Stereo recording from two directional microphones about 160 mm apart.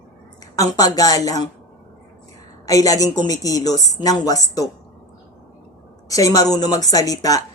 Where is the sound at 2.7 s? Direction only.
20° left (ahead or behind).